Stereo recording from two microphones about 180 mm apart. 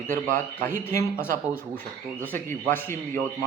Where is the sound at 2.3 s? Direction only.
15° left (ahead or behind).